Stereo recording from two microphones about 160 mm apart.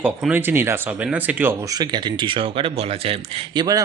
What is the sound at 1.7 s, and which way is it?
Speech, 25° right (ahead or behind).